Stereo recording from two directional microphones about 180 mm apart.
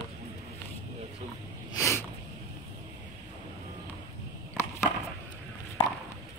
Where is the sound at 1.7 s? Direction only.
15° left (ahead or behind).